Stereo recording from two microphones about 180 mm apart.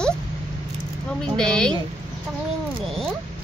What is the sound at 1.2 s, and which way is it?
Speech, 5° left (ahead or behind).